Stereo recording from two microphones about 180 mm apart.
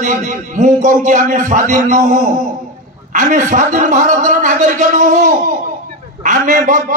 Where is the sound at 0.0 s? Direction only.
45° right (ahead or behind).